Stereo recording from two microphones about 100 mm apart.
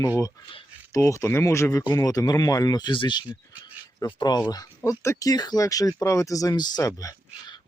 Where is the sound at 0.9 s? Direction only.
30° left (ahead or behind).